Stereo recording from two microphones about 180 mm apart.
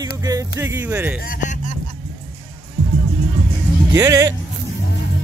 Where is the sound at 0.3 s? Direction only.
15° right (ahead or behind).